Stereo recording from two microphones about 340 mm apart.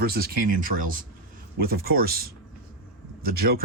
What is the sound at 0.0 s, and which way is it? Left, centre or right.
Speech, right.